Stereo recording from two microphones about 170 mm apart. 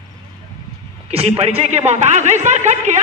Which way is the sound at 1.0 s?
35° right (ahead or behind).